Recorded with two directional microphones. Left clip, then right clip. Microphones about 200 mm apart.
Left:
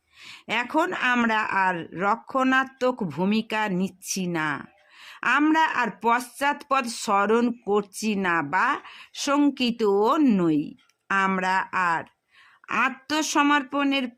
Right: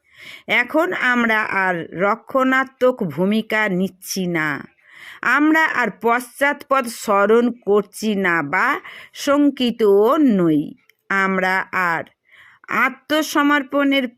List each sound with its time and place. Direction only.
0.2 s speech: 15° right (ahead or behind)